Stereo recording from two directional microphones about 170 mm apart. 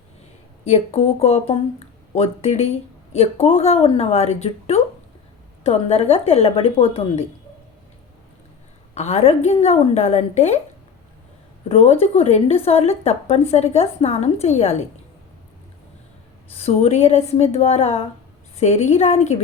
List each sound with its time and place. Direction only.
0.7 s a woman's voice: 35° left (ahead or behind)
9.0 s a woman's voice: 40° left (ahead or behind)
11.7 s a woman's voice: 35° left (ahead or behind)
16.5 s a woman's voice: 35° left (ahead or behind)